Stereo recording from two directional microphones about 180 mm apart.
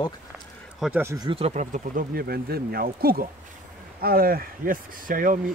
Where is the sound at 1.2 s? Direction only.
35° right (ahead or behind).